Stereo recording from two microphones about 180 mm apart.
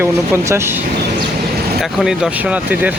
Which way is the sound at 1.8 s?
Centre (ahead or behind).